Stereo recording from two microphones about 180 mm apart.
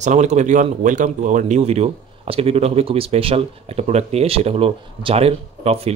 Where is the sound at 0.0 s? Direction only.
40° right (ahead or behind).